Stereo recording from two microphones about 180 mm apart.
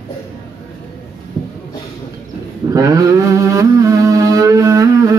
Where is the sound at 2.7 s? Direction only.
20° right (ahead or behind).